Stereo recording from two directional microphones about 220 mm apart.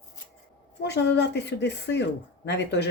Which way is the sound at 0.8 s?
50° left (ahead or behind).